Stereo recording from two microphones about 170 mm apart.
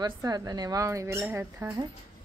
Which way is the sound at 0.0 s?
20° right (ahead or behind).